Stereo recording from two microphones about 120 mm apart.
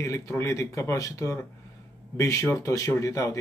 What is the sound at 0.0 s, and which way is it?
Speech, 25° left (ahead or behind).